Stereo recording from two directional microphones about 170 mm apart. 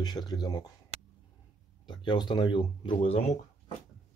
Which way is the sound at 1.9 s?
25° left (ahead or behind).